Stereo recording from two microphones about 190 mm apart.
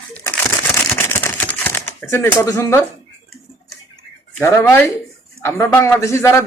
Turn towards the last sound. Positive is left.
turn(degrees=15)  # may be behind; listen again after turning